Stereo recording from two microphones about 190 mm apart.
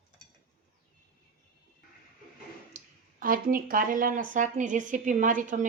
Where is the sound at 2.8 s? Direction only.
35° right (ahead or behind).